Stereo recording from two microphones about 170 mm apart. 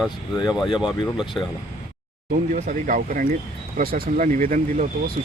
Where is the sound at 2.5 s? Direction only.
50° right (ahead or behind).